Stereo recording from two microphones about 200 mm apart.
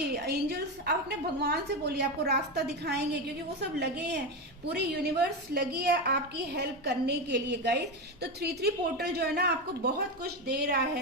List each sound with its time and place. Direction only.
0.1 s a woman's voice: 55° right (ahead or behind)